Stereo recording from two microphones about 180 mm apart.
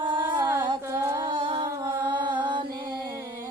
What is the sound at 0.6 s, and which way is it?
Music, 20° right (ahead or behind).